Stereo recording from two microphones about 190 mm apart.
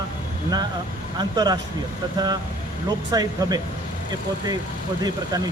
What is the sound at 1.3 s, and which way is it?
Speech, 20° right (ahead or behind).